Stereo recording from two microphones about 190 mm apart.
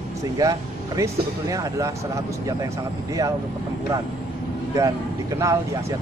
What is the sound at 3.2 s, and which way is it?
Speech, 20° right (ahead or behind).